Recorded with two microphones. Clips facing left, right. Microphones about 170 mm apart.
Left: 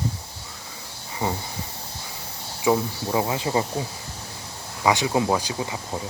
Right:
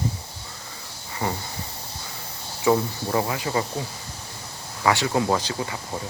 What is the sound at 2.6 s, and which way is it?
Speech, 5° left (ahead or behind).